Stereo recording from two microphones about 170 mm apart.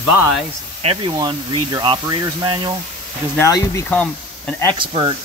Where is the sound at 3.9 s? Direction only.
10° left (ahead or behind).